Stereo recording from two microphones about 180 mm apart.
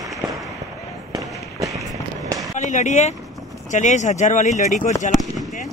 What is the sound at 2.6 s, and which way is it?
Speech, 40° left (ahead or behind).